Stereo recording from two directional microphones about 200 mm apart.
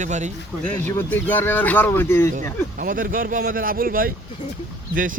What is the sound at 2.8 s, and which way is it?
Speech, 45° right (ahead or behind).